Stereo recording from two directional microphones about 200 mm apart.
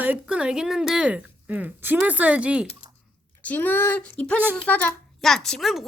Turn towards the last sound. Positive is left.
turn(degrees=0)  # may be behind; listen again after turning